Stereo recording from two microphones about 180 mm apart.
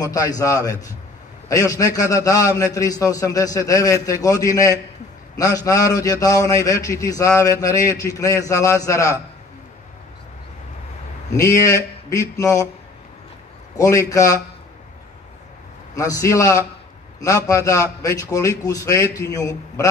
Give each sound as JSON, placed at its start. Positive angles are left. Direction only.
{"t": 0.0, "sound": "a man's voice", "side_deg": 20}
{"t": 11.3, "sound": "speech", "side_deg": 20}
{"t": 13.7, "sound": "speech", "side_deg": 20}
{"t": 15.9, "sound": "a man's voice", "side_deg": 20}